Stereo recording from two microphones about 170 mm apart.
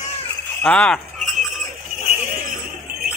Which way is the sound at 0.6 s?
5° left (ahead or behind).